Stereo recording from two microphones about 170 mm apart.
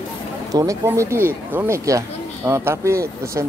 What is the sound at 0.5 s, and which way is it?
Speech, 20° right (ahead or behind).